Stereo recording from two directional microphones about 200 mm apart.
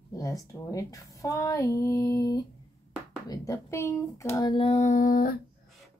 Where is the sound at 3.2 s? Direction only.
20° left (ahead or behind); by 5.4 s 45° left (ahead or behind).